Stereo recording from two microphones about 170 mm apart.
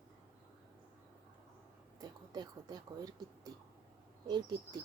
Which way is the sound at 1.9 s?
25° right (ahead or behind).